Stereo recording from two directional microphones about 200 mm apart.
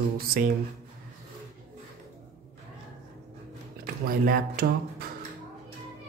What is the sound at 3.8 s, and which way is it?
Speech, 50° right (ahead or behind).